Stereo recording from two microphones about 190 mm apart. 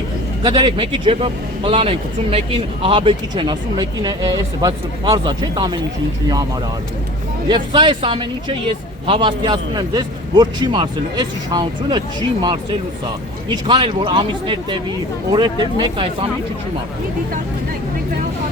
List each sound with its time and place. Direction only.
0.4 s speech: 25° right (ahead or behind)
7.4 s speech: 25° right (ahead or behind)